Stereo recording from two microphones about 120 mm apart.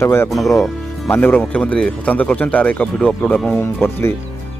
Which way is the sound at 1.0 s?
20° left (ahead or behind).